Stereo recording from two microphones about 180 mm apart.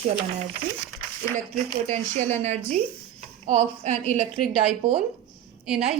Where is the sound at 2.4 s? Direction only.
40° right (ahead or behind).